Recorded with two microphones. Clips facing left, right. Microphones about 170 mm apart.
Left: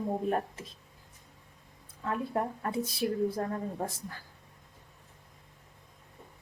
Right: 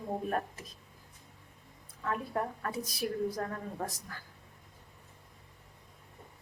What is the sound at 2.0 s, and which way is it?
A woman's voice, 25° left (ahead or behind).